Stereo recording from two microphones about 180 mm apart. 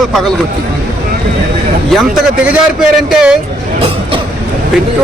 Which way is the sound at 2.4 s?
Centre (ahead or behind).